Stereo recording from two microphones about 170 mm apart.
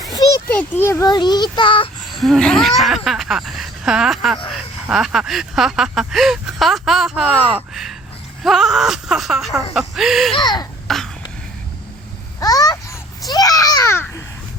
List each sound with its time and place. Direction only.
0.1 s a sound: 20° left (ahead or behind)
0.5 s a child's voice: 10° left (ahead or behind); by 1.9 s 30° left (ahead or behind)
2.0 s speech: centre (ahead or behind)
10.3 s a child's voice: 25° left (ahead or behind)
10.8 s throat clearing: centre (ahead or behind)
12.4 s a child's voice: 20° left (ahead or behind)